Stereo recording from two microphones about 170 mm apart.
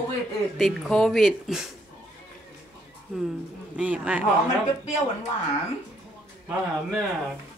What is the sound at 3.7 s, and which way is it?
Speech, 5° right (ahead or behind).